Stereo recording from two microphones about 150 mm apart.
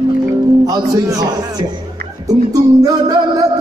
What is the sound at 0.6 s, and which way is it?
Music, 20° right (ahead or behind).